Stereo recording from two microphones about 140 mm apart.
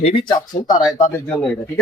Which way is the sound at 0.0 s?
40° left (ahead or behind).